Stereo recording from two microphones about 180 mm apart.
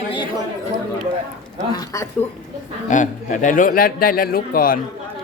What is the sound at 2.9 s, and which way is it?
A man's voice, 45° left (ahead or behind).